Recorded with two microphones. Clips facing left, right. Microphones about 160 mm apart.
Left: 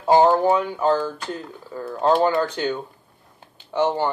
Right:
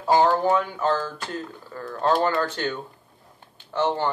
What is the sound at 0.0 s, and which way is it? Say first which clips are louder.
Speech: left 4 dB; 20° left (ahead or behind).